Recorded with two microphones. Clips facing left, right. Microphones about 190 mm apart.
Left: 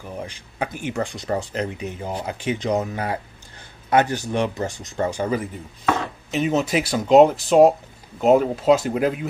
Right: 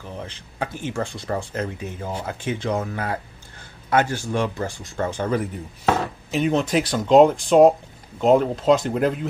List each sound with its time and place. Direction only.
0.0 s speech: 10° left (ahead or behind)